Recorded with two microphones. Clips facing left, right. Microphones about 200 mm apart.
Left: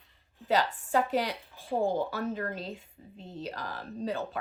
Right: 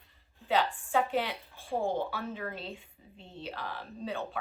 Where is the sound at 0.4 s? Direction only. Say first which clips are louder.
Left 1 dB; 40° left (ahead or behind).